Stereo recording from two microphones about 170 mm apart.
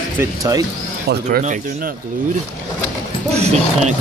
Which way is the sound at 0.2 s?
20° right (ahead or behind).